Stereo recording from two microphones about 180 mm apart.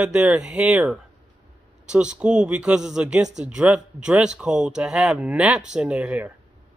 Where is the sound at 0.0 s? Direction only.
5° right (ahead or behind).